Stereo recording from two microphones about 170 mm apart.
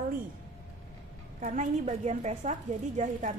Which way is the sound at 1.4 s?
45° right (ahead or behind).